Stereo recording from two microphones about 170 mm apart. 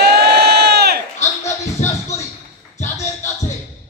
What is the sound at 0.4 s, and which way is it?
Crowd, 70° right (ahead or behind).